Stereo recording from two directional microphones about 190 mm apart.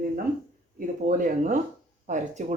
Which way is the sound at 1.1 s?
45° right (ahead or behind).